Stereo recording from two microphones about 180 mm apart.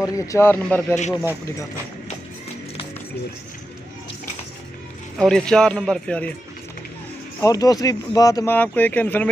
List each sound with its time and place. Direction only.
0.0 s speech: 20° left (ahead or behind)
5.2 s speech: 5° left (ahead or behind)
7.3 s speech: 20° left (ahead or behind)